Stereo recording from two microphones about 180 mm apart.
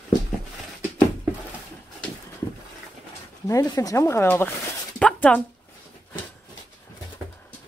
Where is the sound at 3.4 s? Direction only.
20° left (ahead or behind).